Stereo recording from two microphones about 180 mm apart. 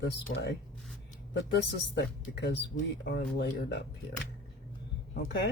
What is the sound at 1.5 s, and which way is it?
Speech, 70° left (ahead or behind).